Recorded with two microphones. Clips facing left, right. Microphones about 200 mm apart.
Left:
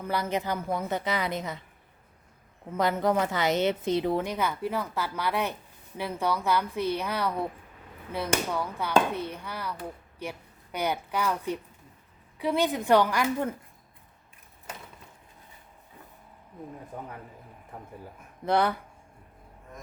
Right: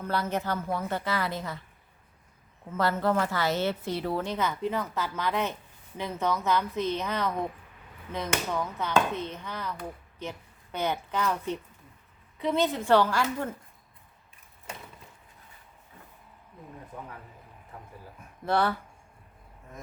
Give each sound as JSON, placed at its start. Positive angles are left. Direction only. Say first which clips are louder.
{"t": 0.0, "sound": "a woman's voice", "louder": "even", "side_deg": 10}
{"t": 2.6, "sound": "a woman's voice", "louder": "left 1 dB", "side_deg": 15}
{"t": 18.4, "sound": "a woman's voice", "louder": "left 1 dB", "side_deg": 15}